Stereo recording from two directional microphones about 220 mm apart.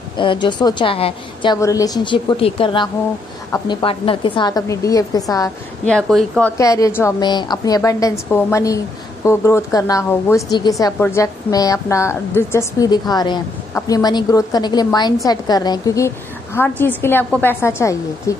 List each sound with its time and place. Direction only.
0.2 s a woman's voice: 20° left (ahead or behind)
5.9 s speech: 5° left (ahead or behind)
6.6 s a woman's voice: 15° left (ahead or behind)